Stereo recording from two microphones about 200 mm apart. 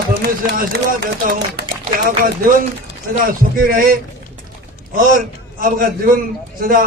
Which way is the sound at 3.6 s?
45° right (ahead or behind).